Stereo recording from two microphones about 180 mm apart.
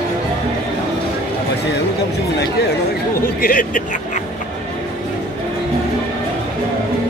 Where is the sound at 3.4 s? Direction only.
50° left (ahead or behind).